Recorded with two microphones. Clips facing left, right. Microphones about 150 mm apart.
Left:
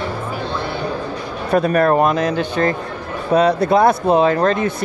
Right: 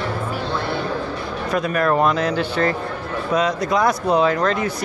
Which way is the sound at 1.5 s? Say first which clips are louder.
Left 5 dB; 40° left (ahead or behind).